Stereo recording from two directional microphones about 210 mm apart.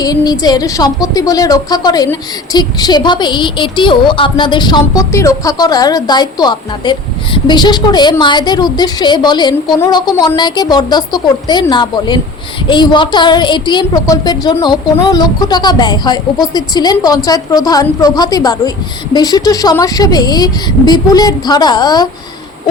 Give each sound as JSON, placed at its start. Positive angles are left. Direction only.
{"t": 0.0, "sound": "a woman's voice", "side_deg": 20}